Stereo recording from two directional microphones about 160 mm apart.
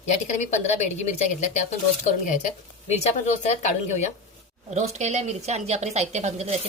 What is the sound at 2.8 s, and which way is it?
A woman's voice, 45° left (ahead or behind).